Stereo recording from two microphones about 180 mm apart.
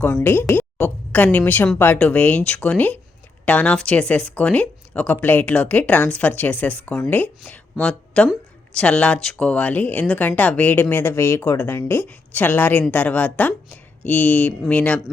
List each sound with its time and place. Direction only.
0.0 s speech: 10° left (ahead or behind)